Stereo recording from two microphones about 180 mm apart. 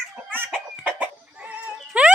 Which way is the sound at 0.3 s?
10° right (ahead or behind).